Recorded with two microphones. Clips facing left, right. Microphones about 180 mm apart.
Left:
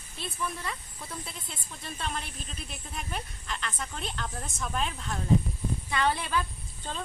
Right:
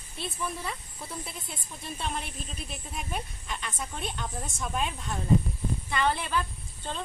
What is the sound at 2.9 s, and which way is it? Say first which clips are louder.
A woman's voice: right 1 dB; 5° right (ahead or behind).